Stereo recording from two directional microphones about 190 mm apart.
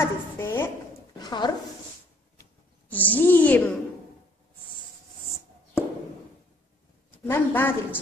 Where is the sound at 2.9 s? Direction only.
10° left (ahead or behind).